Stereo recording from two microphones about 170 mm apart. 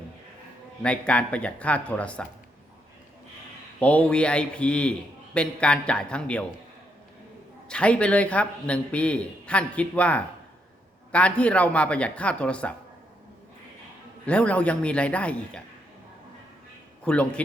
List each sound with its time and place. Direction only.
0.8 s a man's voice: 5° left (ahead or behind)
3.8 s a man's voice: 10° left (ahead or behind)
7.7 s a man's voice: 5° left (ahead or behind)
14.3 s a man's voice: 10° left (ahead or behind)
17.0 s a man's voice: 5° left (ahead or behind)